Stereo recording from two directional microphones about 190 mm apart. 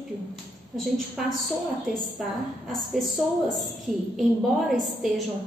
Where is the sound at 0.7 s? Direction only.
Centre (ahead or behind).